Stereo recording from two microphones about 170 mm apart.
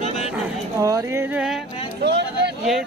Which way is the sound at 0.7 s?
20° right (ahead or behind).